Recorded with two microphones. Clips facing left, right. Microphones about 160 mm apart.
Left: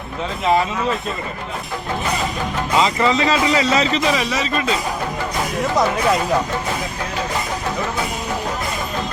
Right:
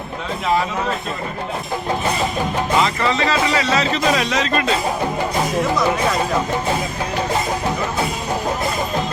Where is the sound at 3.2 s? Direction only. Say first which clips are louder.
Left 1 dB; 25° left (ahead or behind).